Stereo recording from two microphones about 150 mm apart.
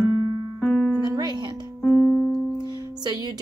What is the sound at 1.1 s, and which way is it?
Music, 30° right (ahead or behind).